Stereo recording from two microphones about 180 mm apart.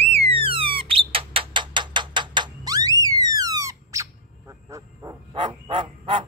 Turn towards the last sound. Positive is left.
turn(degrees=-30)  # may be behind; listen again after turning